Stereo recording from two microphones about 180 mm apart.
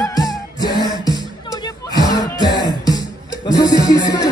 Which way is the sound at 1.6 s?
20° left (ahead or behind).